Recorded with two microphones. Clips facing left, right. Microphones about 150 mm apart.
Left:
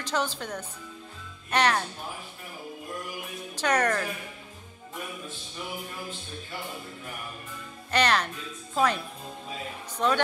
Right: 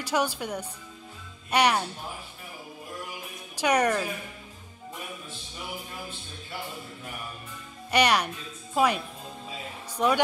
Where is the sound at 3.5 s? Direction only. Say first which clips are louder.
Right 2 dB; 10° right (ahead or behind).